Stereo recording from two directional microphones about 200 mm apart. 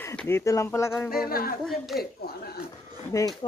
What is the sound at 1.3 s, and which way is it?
Speech, 50° left (ahead or behind).